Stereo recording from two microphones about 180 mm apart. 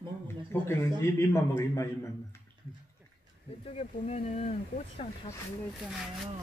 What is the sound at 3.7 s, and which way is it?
Speech, 35° left (ahead or behind).